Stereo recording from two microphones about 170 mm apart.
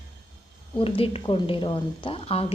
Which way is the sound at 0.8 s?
35° left (ahead or behind).